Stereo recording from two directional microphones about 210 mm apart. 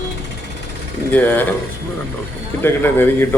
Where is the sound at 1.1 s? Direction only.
10° left (ahead or behind).